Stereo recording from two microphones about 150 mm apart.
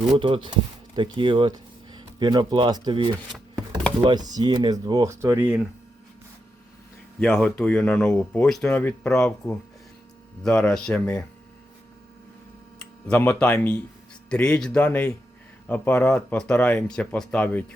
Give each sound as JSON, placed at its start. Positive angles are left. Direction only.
{"t": 0.1, "sound": "speech", "side_deg": -35}
{"t": 7.2, "sound": "speech", "side_deg": 0}
{"t": 13.1, "sound": "speech", "side_deg": 10}